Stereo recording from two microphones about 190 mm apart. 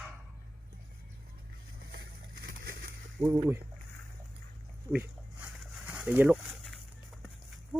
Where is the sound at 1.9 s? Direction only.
60° right (ahead or behind).